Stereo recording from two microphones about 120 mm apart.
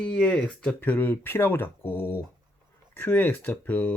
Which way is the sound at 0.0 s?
10° left (ahead or behind).